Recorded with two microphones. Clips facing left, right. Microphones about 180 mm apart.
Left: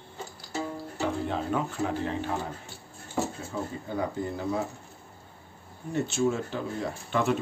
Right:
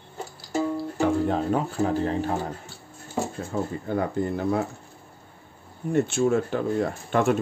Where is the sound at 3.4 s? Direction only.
55° right (ahead or behind).